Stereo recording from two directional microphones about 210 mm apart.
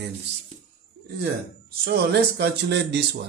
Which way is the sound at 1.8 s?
50° right (ahead or behind).